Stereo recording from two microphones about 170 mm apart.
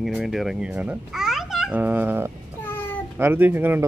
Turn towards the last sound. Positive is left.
turn(degrees=-15)  # may be behind; listen again after turning